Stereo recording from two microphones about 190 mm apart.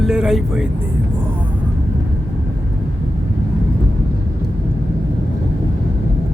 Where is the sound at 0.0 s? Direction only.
5° right (ahead or behind).